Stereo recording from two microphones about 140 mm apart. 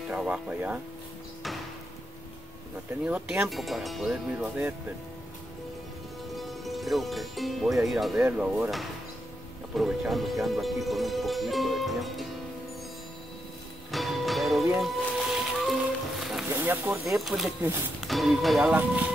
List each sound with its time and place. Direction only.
0.1 s speech: 10° right (ahead or behind)
3.1 s speech: 10° right (ahead or behind)
6.3 s speech: centre (ahead or behind)
13.9 s music: centre (ahead or behind)
16.4 s speech: 15° right (ahead or behind)
17.2 s speech: centre (ahead or behind)
17.6 s speech: 15° right (ahead or behind)
18.0 s speech: centre (ahead or behind)